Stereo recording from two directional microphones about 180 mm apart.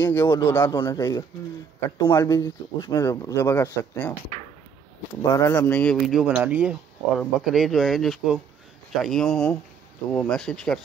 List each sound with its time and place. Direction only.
0.0 s speech: 15° left (ahead or behind)
5.3 s speech: 15° left (ahead or behind)